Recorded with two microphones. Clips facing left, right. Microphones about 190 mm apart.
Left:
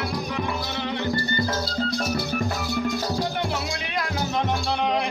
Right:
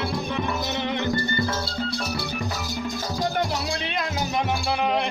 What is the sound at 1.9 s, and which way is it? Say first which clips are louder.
Music: left 3 dB; 50° left (ahead or behind).